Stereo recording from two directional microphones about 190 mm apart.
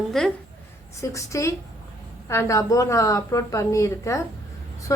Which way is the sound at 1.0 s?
15° left (ahead or behind).